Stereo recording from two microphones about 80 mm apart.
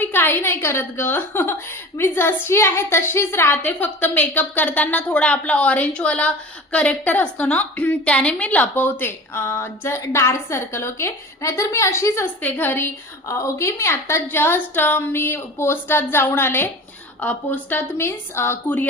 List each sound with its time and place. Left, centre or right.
0.0 s a woman's voice: left
12.2 s a woman's voice: left